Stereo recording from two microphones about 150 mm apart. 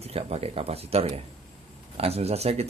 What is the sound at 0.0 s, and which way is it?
Speech, 40° right (ahead or behind).